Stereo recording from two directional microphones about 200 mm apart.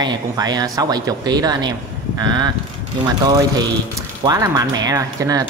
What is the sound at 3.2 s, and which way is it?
Speech, 20° right (ahead or behind).